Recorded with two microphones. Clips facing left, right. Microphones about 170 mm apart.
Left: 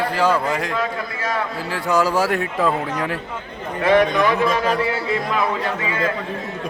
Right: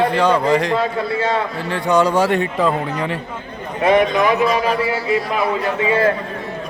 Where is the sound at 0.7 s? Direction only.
25° right (ahead or behind).